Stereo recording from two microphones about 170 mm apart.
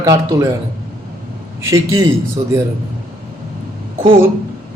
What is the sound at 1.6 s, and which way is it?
Speech, 20° right (ahead or behind).